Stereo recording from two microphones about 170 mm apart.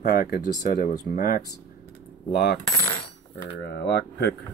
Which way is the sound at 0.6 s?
60° left (ahead or behind).